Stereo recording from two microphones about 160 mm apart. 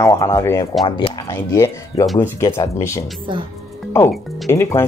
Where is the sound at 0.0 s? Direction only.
20° left (ahead or behind).